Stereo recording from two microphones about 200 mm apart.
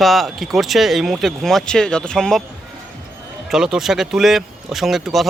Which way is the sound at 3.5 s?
5° right (ahead or behind).